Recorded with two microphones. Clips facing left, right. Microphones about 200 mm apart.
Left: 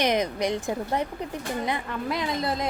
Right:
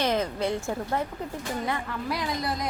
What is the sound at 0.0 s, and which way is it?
A woman's voice, 15° left (ahead or behind).